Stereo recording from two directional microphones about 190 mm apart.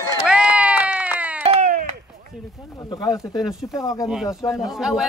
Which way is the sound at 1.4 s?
35° right (ahead or behind).